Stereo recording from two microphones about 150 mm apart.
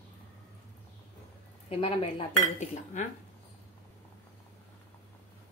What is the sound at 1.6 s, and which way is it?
Speech, 40° left (ahead or behind).